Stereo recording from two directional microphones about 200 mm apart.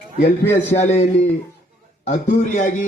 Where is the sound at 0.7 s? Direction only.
35° left (ahead or behind).